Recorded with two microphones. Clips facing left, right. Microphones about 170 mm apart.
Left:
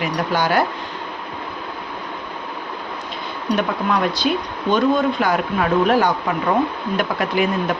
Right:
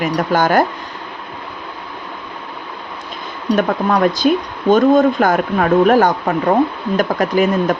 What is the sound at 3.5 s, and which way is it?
Speech, 45° right (ahead or behind).